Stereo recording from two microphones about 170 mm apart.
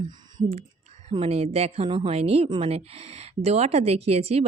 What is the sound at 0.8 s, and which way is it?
A woman's voice, 40° right (ahead or behind).